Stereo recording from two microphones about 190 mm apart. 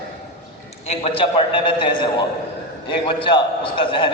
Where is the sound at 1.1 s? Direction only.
30° left (ahead or behind).